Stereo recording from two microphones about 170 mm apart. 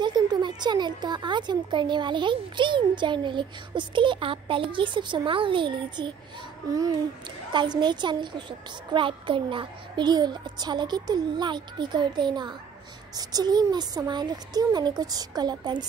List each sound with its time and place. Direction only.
0.0 s speech: 25° right (ahead or behind)